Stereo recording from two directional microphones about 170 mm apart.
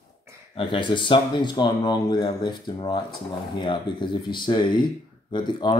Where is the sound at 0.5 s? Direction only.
30° left (ahead or behind).